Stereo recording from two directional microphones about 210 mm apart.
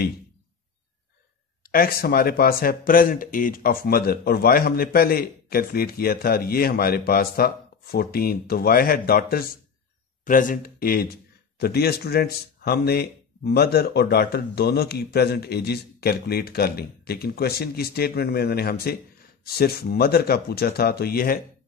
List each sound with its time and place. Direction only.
1.7 s speech: 45° left (ahead or behind)